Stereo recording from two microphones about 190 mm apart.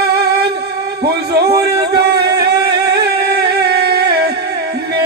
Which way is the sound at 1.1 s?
55° right (ahead or behind).